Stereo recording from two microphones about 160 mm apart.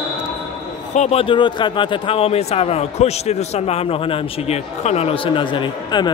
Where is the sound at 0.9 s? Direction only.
40° left (ahead or behind).